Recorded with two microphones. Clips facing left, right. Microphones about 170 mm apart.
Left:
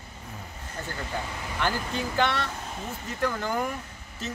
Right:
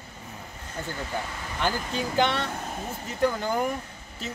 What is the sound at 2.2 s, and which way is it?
Speech, 15° right (ahead or behind).